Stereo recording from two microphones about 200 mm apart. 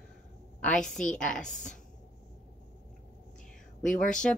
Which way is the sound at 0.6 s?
5° left (ahead or behind).